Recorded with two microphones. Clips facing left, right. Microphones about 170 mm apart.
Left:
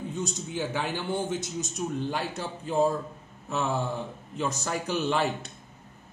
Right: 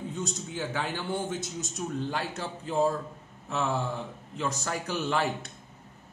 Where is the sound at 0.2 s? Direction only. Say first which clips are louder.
Left 3 dB; 15° left (ahead or behind).